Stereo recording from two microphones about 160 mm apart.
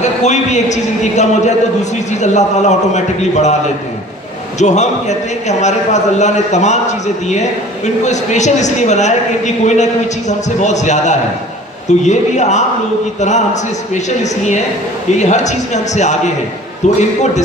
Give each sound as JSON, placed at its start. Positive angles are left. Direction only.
{"t": 0.0, "sound": "a man's voice", "side_deg": 45}
{"t": 4.6, "sound": "a man's voice", "side_deg": 45}